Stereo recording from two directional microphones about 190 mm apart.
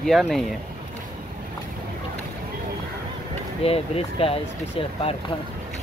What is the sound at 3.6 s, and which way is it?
Speech, 30° left (ahead or behind).